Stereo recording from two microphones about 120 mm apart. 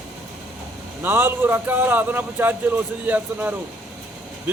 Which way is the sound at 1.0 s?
20° right (ahead or behind).